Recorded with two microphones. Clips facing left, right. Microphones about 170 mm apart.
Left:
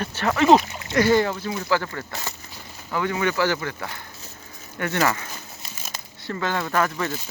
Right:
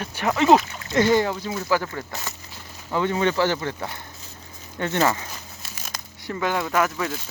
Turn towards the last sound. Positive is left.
turn(degrees=0)  # may be behind; listen again after turning